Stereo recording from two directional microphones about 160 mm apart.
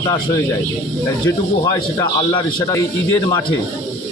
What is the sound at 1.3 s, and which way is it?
Speech, 20° left (ahead or behind).